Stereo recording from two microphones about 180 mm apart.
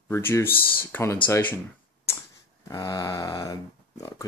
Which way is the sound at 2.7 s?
20° left (ahead or behind).